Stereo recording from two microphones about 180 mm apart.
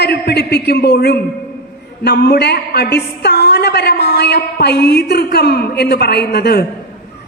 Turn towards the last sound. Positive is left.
turn(degrees=65)  # may be behind; listen again after turning